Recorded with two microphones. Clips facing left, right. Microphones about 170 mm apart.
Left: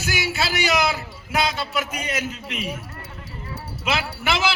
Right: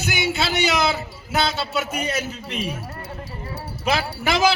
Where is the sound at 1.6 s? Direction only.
25° right (ahead or behind).